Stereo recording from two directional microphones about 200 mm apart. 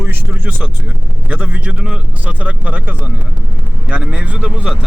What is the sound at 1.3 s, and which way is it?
Speech, 5° right (ahead or behind).